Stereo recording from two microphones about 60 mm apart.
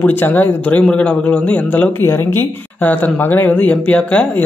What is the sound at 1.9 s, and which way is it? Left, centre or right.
A woman's voice, left.